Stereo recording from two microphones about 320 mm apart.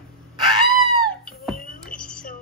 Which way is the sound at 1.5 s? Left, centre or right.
Left.